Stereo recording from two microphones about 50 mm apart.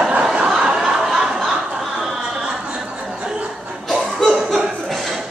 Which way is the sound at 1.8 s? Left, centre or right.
Centre.